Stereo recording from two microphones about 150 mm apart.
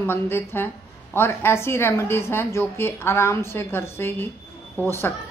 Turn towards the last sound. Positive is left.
turn(degrees=15)  # may be behind; listen again after turning